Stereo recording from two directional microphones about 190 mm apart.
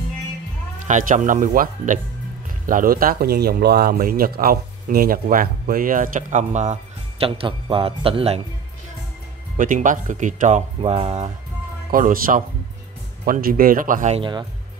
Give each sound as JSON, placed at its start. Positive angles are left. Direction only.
{"t": 0.8, "sound": "speech", "side_deg": -40}
{"t": 9.6, "sound": "speech", "side_deg": -45}
{"t": 10.8, "sound": "speech", "side_deg": -30}
{"t": 11.9, "sound": "speech", "side_deg": -45}